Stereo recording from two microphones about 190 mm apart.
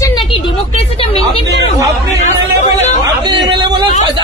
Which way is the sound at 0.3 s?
30° left (ahead or behind).